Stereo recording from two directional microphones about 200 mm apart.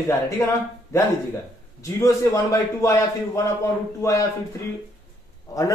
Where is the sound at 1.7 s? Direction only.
15° left (ahead or behind).